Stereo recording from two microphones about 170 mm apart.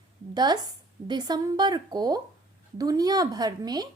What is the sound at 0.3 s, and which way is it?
A woman's voice, 25° right (ahead or behind).